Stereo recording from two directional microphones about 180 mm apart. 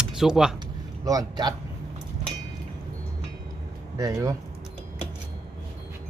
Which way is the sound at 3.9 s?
20° right (ahead or behind).